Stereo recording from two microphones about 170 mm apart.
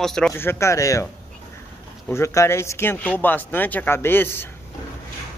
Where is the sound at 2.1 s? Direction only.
15° left (ahead or behind).